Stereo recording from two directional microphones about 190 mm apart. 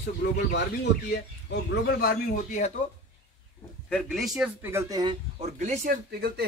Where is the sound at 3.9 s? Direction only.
5° left (ahead or behind); by 5.2 s 20° right (ahead or behind).